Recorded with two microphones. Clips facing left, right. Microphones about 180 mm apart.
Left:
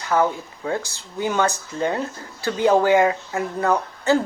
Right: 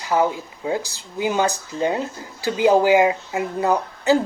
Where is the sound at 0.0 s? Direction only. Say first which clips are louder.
Even; 15° right (ahead or behind).